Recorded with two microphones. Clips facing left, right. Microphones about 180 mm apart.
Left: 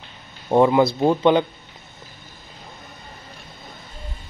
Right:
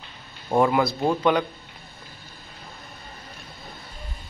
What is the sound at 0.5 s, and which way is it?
Speech, 25° left (ahead or behind).